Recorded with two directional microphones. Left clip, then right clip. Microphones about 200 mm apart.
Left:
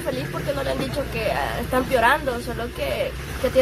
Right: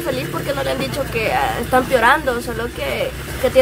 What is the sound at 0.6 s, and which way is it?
A woman's voice, 10° right (ahead or behind).